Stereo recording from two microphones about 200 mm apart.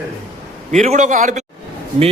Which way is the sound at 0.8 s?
35° right (ahead or behind).